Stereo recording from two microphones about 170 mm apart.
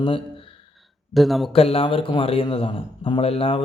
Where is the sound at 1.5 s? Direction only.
35° left (ahead or behind).